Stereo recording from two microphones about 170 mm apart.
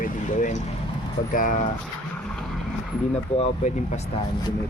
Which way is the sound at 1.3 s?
50° left (ahead or behind).